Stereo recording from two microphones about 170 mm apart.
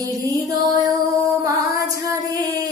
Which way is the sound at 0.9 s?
20° right (ahead or behind).